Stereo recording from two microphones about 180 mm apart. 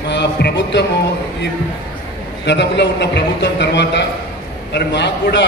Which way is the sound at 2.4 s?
75° left (ahead or behind).